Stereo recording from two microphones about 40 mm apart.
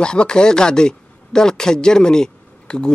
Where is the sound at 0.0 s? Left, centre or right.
Left.